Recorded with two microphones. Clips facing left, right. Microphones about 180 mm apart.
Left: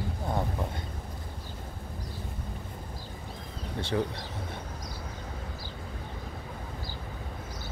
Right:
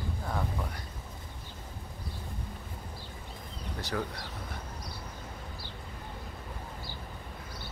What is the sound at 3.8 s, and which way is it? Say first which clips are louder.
Speech: left 5 dB; 25° left (ahead or behind).